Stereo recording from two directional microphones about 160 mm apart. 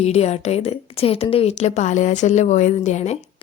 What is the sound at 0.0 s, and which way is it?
Speech, 40° left (ahead or behind).